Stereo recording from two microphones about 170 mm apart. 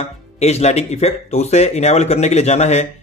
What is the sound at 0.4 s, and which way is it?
A man's voice, 40° left (ahead or behind).